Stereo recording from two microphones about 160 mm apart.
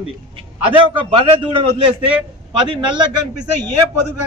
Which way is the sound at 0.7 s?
35° right (ahead or behind).